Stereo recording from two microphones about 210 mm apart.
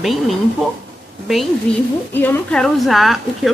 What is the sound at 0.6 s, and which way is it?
Speech, centre (ahead or behind).